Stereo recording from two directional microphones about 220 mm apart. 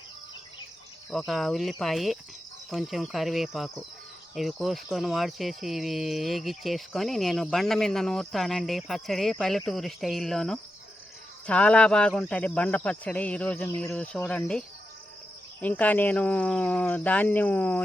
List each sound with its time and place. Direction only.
1.2 s speech: centre (ahead or behind)
15.6 s speech: 5° left (ahead or behind)